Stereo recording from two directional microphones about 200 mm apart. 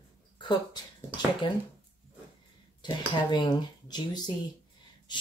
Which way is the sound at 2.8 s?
20° left (ahead or behind).